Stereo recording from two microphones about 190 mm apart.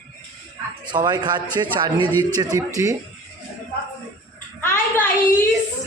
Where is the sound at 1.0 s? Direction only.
25° right (ahead or behind).